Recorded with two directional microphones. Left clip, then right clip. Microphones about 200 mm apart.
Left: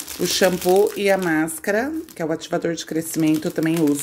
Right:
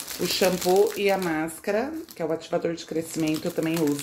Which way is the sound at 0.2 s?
35° left (ahead or behind).